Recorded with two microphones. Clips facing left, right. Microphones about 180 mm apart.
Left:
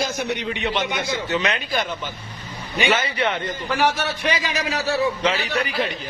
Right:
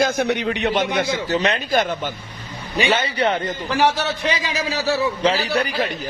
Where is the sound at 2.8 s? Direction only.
35° right (ahead or behind).